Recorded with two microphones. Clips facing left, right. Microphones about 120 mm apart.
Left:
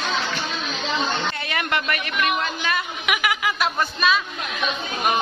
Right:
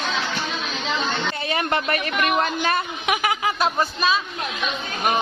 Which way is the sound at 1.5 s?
30° right (ahead or behind).